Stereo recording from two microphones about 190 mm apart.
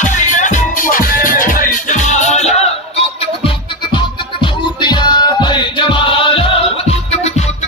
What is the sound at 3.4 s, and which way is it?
Music, 25° left (ahead or behind).